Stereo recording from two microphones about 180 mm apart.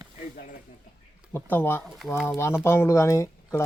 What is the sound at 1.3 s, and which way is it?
Speech, 10° left (ahead or behind).